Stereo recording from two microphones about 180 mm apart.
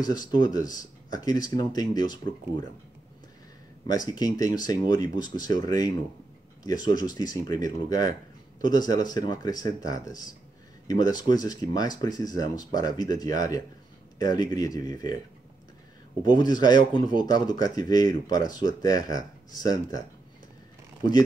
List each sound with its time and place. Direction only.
0.0 s speech: 20° left (ahead or behind)
3.8 s speech: 20° left (ahead or behind)
16.2 s speech: 25° left (ahead or behind)